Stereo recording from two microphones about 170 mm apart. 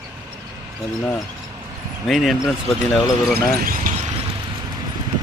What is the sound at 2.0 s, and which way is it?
Speech, centre (ahead or behind).